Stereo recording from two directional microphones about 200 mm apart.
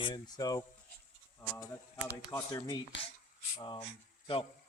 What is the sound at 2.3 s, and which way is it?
Speech, 15° left (ahead or behind).